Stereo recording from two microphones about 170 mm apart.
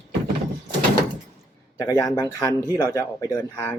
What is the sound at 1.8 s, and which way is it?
Speech, 20° left (ahead or behind).